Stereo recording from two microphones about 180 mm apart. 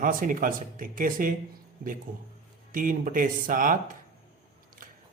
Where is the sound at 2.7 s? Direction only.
50° right (ahead or behind).